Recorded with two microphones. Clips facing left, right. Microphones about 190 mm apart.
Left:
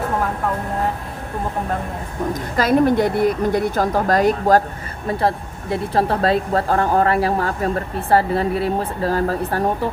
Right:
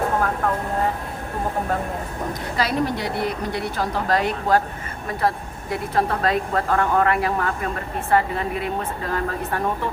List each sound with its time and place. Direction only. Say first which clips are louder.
2.6 s a woman's voice: left 8 dB; 50° left (ahead or behind)
5.7 s speech: left 3 dB; 30° left (ahead or behind)